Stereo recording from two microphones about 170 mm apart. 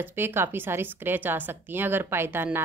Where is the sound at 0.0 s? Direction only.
15° right (ahead or behind).